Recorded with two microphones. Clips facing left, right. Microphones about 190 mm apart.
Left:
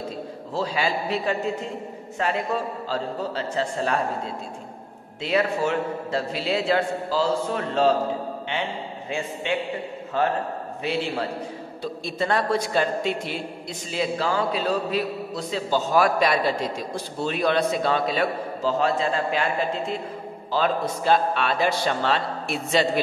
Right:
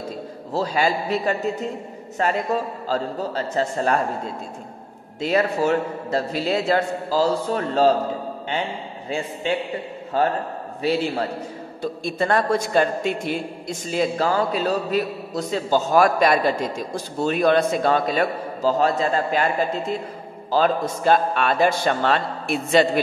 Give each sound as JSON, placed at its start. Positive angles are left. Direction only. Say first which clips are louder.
{"t": 0.5, "sound": "a man's voice", "louder": "right 4 dB", "side_deg": -40}
{"t": 5.2, "sound": "a man's voice", "louder": "right 3 dB", "side_deg": -40}
{"t": 9.1, "sound": "a man's voice", "louder": "right 3 dB", "side_deg": -40}
{"t": 11.8, "sound": "a man's voice", "louder": "right 4 dB", "side_deg": -50}
{"t": 20.5, "sound": "a man's voice", "louder": "right 4 dB", "side_deg": -45}